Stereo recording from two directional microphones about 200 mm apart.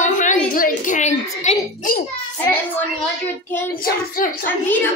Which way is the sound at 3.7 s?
45° left (ahead or behind).